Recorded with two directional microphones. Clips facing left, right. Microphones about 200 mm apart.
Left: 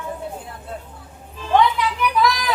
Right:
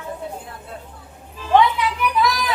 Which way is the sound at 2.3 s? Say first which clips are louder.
Left 1 dB; centre (ahead or behind).